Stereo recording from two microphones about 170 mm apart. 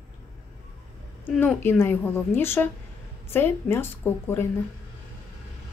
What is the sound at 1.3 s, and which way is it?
A woman's voice, 10° left (ahead or behind).